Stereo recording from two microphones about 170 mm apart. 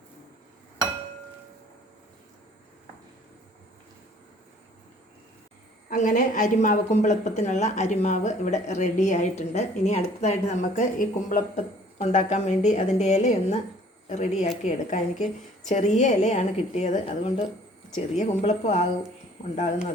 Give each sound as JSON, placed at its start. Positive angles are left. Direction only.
{"t": 5.9, "sound": "a woman's voice", "side_deg": 50}